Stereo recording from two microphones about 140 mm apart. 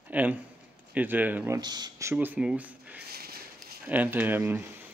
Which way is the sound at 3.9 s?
10° right (ahead or behind).